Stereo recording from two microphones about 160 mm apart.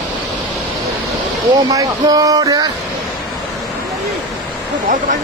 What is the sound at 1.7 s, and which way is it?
Speech, 20° right (ahead or behind).